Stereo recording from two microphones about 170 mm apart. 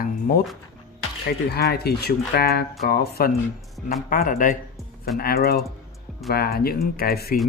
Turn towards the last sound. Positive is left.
turn(degrees=65)  # may be behind; listen again after turning